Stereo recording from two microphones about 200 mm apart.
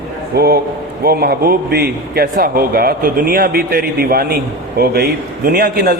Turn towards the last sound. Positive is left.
turn(degrees=-55)  # may be behind; listen again after turning